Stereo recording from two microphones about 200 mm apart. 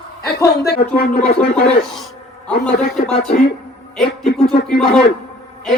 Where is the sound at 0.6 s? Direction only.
55° left (ahead or behind).